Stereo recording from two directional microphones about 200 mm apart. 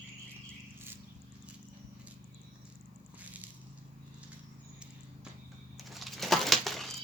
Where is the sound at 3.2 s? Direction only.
5° right (ahead or behind).